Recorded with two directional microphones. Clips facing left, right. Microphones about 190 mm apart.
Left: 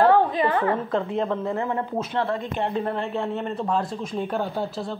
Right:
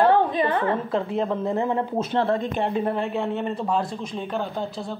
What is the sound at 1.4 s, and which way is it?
Speech, 20° right (ahead or behind).